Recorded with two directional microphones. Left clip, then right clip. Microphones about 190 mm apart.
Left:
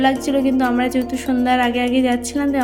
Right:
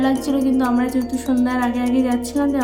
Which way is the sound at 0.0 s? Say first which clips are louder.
Left 3 dB; 10° left (ahead or behind).